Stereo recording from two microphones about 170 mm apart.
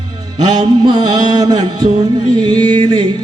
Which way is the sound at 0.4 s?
25° right (ahead or behind).